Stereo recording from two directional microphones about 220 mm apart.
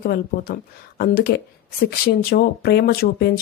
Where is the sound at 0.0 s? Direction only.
45° left (ahead or behind).